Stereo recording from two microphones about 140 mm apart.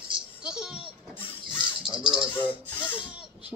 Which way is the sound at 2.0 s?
5° right (ahead or behind).